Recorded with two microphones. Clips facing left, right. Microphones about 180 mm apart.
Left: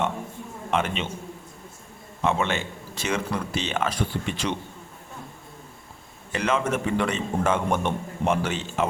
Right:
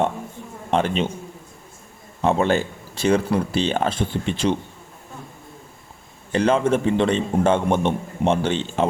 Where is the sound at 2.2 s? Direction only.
35° right (ahead or behind).